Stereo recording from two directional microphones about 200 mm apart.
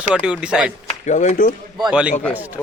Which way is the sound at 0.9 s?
35° left (ahead or behind).